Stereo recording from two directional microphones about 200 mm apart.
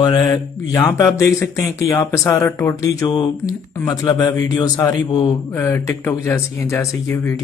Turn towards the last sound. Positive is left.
turn(degrees=15)  # may be behind; listen again after turning